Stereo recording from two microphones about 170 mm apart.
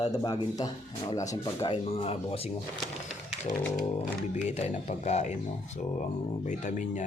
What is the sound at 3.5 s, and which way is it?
Speech, 25° left (ahead or behind).